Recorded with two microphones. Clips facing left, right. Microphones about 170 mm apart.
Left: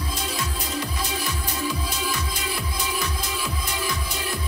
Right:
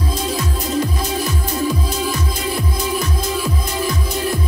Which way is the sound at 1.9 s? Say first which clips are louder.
Right 7 dB; 40° right (ahead or behind).